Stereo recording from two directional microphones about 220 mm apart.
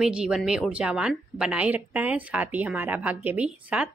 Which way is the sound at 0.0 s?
5° right (ahead or behind).